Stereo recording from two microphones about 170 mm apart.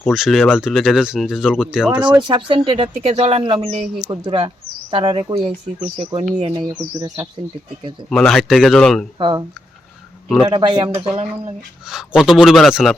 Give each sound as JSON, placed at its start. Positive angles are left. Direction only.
{"t": 0.0, "sound": "speech", "side_deg": 0}
{"t": 2.2, "sound": "speech", "side_deg": -30}
{"t": 8.1, "sound": "speech", "side_deg": 0}
{"t": 9.1, "sound": "speech", "side_deg": -25}
{"t": 10.4, "sound": "speech", "side_deg": -25}
{"t": 11.1, "sound": "speech", "side_deg": -40}
{"t": 11.9, "sound": "speech", "side_deg": -5}